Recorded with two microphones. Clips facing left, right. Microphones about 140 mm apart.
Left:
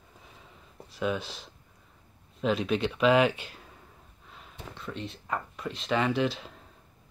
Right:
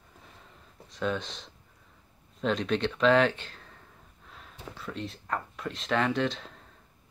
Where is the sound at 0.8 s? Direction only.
5° left (ahead or behind).